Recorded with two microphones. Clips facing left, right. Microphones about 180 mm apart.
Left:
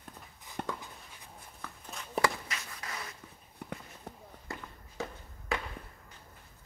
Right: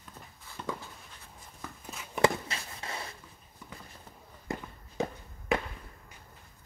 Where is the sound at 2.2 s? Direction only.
25° right (ahead or behind).